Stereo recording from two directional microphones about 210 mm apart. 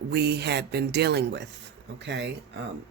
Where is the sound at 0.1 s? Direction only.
50° right (ahead or behind).